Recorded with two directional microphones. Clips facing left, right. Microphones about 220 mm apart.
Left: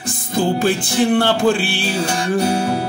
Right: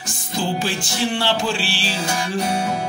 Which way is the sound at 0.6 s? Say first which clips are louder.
Left 7 dB; 55° left (ahead or behind).